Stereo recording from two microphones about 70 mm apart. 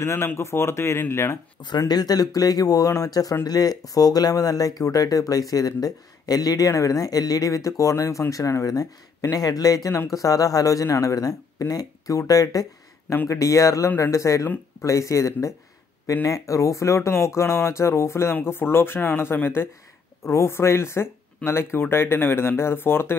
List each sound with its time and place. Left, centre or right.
0.0 s speech: left
1.9 s speech: left
6.7 s speech: left